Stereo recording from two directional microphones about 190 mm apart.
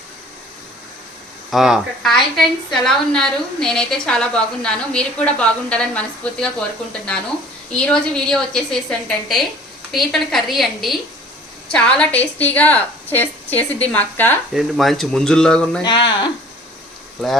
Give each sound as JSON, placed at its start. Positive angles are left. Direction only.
{"t": 1.5, "sound": "a woman's voice", "side_deg": 0}
{"t": 7.7, "sound": "a woman's voice", "side_deg": 5}
{"t": 15.8, "sound": "speech", "side_deg": 25}